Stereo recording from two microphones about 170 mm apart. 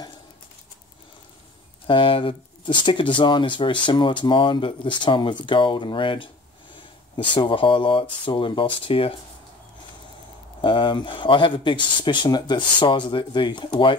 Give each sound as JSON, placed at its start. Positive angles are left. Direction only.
{"t": 1.9, "sound": "speech", "side_deg": 30}
{"t": 10.6, "sound": "speech", "side_deg": 30}